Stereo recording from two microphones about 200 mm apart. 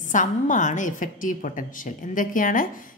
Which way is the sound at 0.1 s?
40° left (ahead or behind).